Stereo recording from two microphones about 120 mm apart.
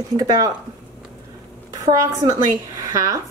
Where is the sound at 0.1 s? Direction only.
30° right (ahead or behind).